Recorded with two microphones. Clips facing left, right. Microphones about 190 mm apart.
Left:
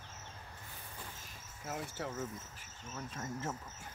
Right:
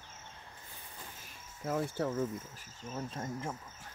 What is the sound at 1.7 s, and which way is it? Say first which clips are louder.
Cricket: right 8 dB; 50° right (ahead or behind).